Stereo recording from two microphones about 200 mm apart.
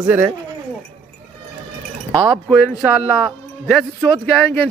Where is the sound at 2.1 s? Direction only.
20° right (ahead or behind).